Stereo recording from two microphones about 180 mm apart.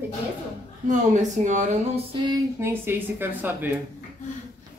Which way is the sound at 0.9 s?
45° right (ahead or behind).